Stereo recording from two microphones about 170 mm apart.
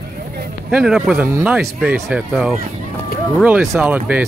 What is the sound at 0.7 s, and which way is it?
Speech, centre (ahead or behind).